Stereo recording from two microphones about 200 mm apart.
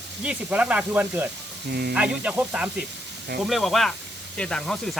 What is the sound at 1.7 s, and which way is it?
Speech, 50° right (ahead or behind).